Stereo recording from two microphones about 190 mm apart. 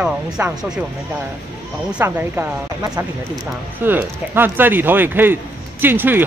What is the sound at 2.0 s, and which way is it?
Speech, 15° right (ahead or behind).